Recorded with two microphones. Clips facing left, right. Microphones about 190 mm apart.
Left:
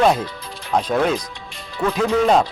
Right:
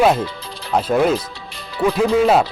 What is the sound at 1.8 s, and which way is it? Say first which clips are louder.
Speech: right 4 dB; 15° right (ahead or behind).